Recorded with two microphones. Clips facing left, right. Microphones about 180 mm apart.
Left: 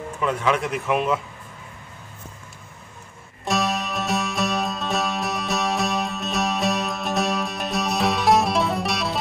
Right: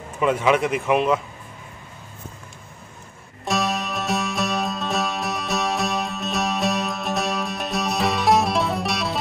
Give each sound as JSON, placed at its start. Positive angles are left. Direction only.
{"t": 0.2, "sound": "speech", "side_deg": -10}
{"t": 3.4, "sound": "music", "side_deg": 0}